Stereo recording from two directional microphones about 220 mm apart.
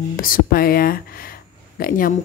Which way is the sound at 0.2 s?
40° left (ahead or behind).